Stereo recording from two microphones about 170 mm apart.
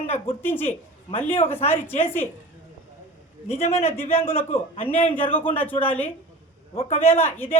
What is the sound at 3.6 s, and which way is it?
A man's voice, 40° left (ahead or behind).